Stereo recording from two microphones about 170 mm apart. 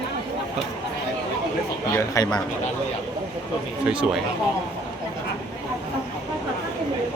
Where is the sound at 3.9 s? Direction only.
5° right (ahead or behind).